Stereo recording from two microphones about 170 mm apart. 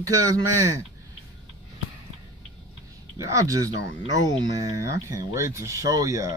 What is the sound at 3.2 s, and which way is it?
Speech, 20° right (ahead or behind).